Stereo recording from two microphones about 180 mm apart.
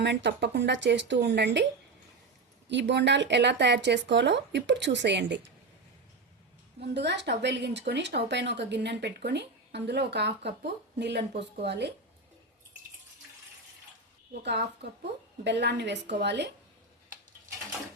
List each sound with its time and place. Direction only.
0.0 s speech: 75° right (ahead or behind)
2.6 s speech: 75° right (ahead or behind)
6.8 s speech: 70° right (ahead or behind)
14.4 s speech: 70° right (ahead or behind)